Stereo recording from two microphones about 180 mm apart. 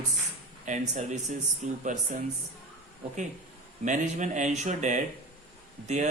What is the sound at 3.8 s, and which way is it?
Speech, 45° right (ahead or behind).